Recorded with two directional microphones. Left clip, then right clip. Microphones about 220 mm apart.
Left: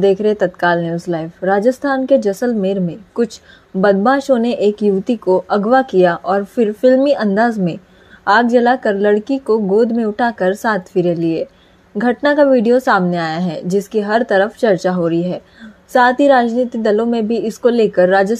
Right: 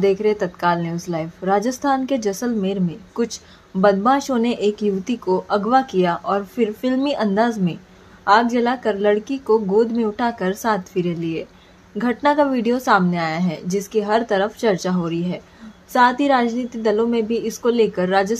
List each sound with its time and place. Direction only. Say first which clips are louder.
0.0 s a woman's voice: left 5 dB; 20° left (ahead or behind)